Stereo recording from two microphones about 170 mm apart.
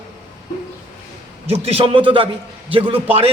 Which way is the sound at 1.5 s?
35° right (ahead or behind).